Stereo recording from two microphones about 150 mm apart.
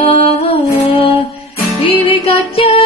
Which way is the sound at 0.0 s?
35° left (ahead or behind).